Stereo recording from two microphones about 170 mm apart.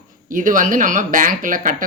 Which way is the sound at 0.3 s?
50° right (ahead or behind).